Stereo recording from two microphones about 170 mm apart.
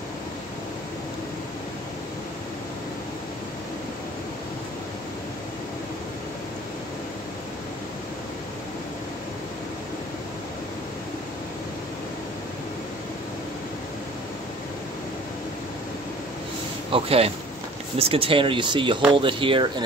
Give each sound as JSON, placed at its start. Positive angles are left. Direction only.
{"t": 16.9, "sound": "speech", "side_deg": -35}